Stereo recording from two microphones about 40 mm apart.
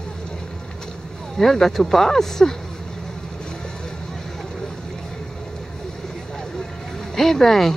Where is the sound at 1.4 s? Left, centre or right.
Centre.